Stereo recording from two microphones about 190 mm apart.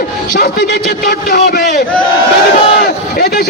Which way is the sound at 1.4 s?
55° left (ahead or behind).